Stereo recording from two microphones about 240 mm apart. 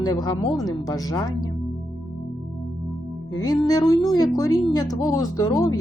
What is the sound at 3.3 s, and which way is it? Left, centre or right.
Speech, centre.